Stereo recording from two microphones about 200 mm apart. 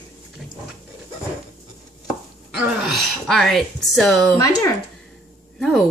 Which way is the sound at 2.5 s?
Centre (ahead or behind).